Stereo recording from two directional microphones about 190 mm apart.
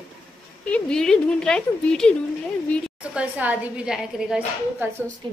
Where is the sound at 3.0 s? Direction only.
5° right (ahead or behind).